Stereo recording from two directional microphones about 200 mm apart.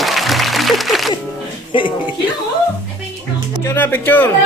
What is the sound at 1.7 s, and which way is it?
Music, 25° left (ahead or behind).